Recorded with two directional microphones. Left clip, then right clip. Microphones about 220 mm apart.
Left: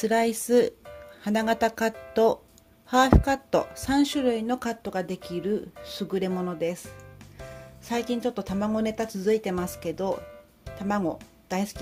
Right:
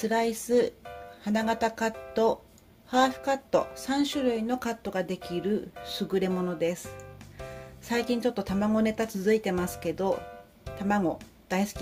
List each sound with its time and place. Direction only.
0.0 s speech: 30° left (ahead or behind); by 6.8 s 10° left (ahead or behind)
7.9 s a woman's voice: 10° left (ahead or behind)